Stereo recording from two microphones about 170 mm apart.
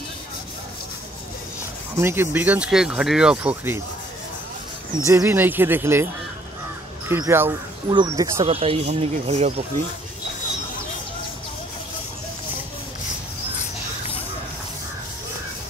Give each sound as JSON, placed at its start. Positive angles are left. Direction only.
{"t": 2.0, "sound": "speech", "side_deg": -15}
{"t": 5.0, "sound": "speech", "side_deg": -15}
{"t": 7.1, "sound": "speech", "side_deg": -15}
{"t": 7.9, "sound": "speech", "side_deg": -25}